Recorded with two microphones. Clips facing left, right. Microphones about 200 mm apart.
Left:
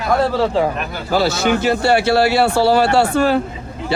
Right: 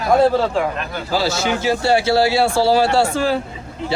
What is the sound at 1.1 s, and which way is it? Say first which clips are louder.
Speech: left 4 dB; 60° left (ahead or behind).